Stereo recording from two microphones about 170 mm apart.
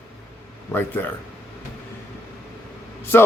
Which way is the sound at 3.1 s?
10° left (ahead or behind).